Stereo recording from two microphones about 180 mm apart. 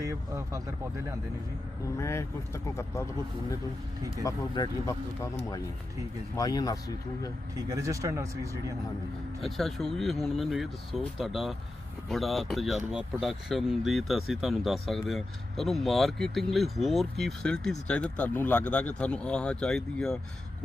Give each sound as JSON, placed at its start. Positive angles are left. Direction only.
{"t": 0.0, "sound": "speech", "side_deg": -15}
{"t": 2.0, "sound": "speech", "side_deg": 15}
{"t": 4.1, "sound": "speech", "side_deg": 20}
{"t": 6.3, "sound": "speech", "side_deg": 20}
{"t": 7.5, "sound": "speech", "side_deg": -20}
{"t": 9.4, "sound": "speech", "side_deg": 0}